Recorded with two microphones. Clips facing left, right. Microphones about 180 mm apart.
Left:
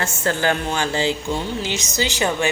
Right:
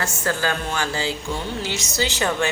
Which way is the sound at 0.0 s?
25° left (ahead or behind).